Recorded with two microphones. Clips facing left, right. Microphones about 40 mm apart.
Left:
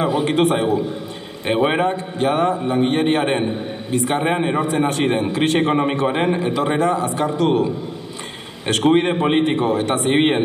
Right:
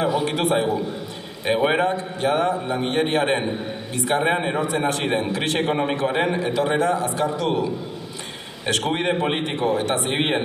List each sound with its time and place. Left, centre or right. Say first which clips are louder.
0.1 s a man's voice: left 4 dB; left
1.5 s a man's voice: left 2 dB; centre
1.9 s a man's voice: left 2 dB; left
3.4 s a man's voice: left 3 dB; left
4.3 s a man's voice: left 2 dB; centre
4.9 s a man's voice: left 4 dB; left
5.6 s a man's voice: left 4 dB; left
8.9 s a man's voice: left 6 dB; centre
9.5 s a man's voice: left 3 dB; left
10.1 s a man's voice: left 7 dB; centre